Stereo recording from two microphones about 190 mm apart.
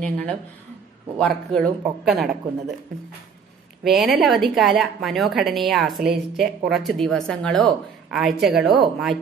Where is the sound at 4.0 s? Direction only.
Centre (ahead or behind).